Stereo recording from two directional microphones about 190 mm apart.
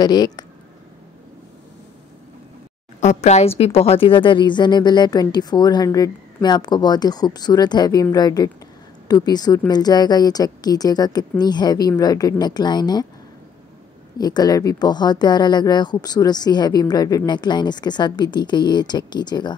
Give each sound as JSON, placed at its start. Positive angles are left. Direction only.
{"t": 0.0, "sound": "a woman's voice", "side_deg": 20}
{"t": 3.0, "sound": "a woman's voice", "side_deg": 35}
{"t": 14.1, "sound": "a woman's voice", "side_deg": 20}